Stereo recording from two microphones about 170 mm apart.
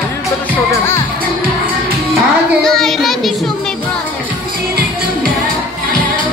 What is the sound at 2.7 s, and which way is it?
Child singing, centre (ahead or behind).